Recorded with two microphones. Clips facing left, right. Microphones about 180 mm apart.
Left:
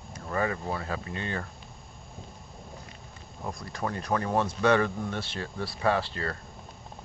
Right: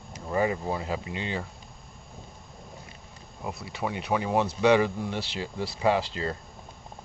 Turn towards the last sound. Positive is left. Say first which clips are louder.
# right 2 dB
turn(degrees=-15)  # may be behind; listen again after turning